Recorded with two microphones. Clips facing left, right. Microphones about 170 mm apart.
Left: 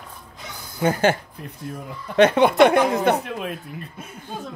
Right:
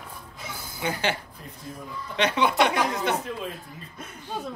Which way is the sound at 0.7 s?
45° left (ahead or behind).